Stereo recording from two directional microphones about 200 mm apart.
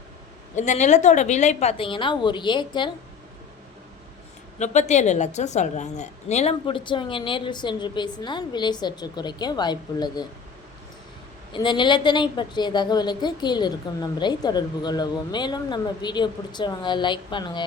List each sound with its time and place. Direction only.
0.5 s a woman's voice: 35° left (ahead or behind)
4.6 s a woman's voice: 35° left (ahead or behind); by 10.2 s 20° left (ahead or behind)
11.5 s a woman's voice: 25° left (ahead or behind)